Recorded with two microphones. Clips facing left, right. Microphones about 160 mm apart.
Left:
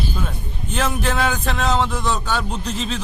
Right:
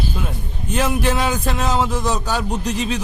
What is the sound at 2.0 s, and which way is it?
Speech, 40° right (ahead or behind).